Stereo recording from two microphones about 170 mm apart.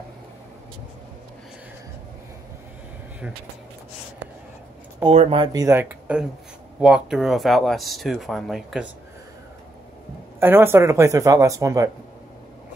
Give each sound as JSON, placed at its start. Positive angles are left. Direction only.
{"t": 5.0, "sound": "speech", "side_deg": -35}
{"t": 10.4, "sound": "speech", "side_deg": -15}